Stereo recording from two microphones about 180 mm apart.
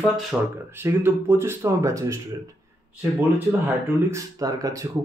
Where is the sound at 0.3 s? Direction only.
5° right (ahead or behind).